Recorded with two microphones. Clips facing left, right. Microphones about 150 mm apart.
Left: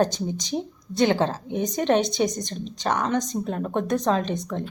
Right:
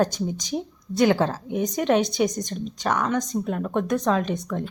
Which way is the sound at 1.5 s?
5° right (ahead or behind).